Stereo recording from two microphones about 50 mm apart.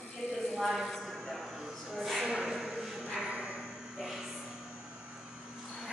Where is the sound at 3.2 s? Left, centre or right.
Right.